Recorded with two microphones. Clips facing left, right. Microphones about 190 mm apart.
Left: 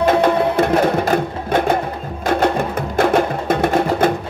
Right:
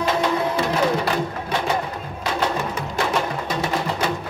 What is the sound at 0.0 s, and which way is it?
Music, 55° left (ahead or behind).